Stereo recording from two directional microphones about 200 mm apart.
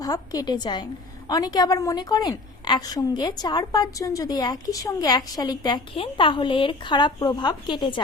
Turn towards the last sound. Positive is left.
turn(degrees=25)  # may be behind; listen again after turning